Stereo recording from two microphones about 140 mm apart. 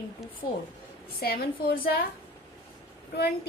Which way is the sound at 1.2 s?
90° left.